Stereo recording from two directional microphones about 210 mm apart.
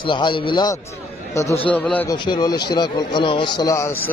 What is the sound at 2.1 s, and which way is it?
A man's voice, 20° left (ahead or behind).